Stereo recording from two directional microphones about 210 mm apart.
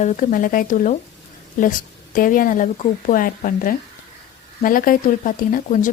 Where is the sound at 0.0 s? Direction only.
35° left (ahead or behind).